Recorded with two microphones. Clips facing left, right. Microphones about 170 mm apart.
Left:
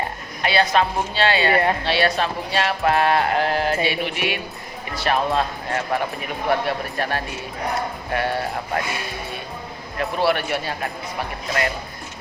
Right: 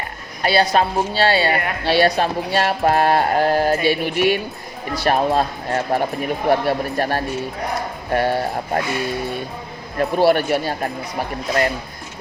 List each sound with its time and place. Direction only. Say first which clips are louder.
0.4 s speech: right 2 dB; 35° right (ahead or behind)
3.8 s music: right 7 dB; 45° right (ahead or behind)
5.0 s speech: right 3 dB; 40° right (ahead or behind)
10.0 s speech: right 5 dB; 40° right (ahead or behind)